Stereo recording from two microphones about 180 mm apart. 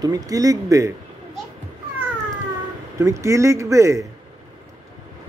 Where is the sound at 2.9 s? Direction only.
15° right (ahead or behind).